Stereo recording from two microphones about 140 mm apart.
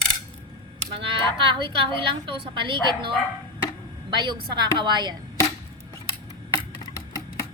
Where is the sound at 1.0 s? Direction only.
40° right (ahead or behind).